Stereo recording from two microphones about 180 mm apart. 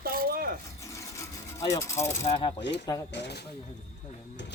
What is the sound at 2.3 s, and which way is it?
Speech, 30° left (ahead or behind).